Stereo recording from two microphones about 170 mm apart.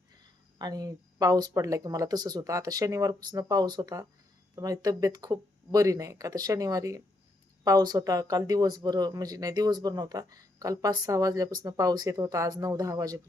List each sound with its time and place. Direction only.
0.6 s speech: 20° right (ahead or behind)